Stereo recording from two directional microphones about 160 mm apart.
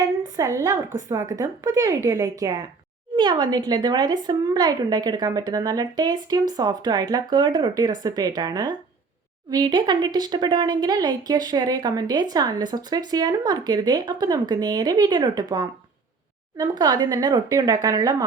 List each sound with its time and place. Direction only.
0.3 s speech: 20° right (ahead or behind)